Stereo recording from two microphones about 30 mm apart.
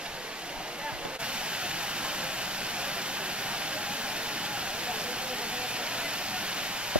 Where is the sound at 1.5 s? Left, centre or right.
Right.